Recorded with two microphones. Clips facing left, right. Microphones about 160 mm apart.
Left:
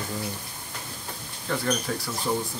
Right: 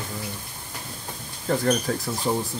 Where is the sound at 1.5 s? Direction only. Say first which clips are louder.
Right 5 dB; 40° right (ahead or behind).